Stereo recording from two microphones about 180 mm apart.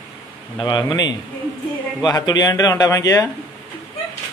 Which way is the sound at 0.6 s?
25° left (ahead or behind).